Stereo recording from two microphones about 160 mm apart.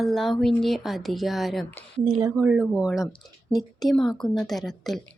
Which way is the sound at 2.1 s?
25° right (ahead or behind).